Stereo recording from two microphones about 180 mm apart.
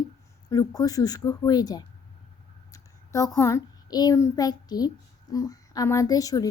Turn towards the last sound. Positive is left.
turn(degrees=20)  # may be behind; listen again after turning